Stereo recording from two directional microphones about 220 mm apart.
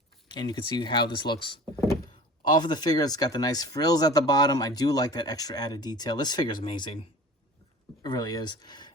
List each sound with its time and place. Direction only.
0.3 s speech: 20° left (ahead or behind)
8.0 s speech: 20° left (ahead or behind)